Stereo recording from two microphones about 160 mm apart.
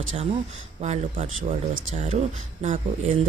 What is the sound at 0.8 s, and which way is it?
Speech, 45° right (ahead or behind).